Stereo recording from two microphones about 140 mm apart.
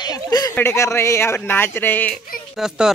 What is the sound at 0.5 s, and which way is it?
Speech, 20° left (ahead or behind).